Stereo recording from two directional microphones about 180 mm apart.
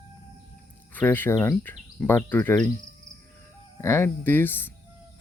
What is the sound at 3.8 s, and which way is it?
Speech, 15° left (ahead or behind).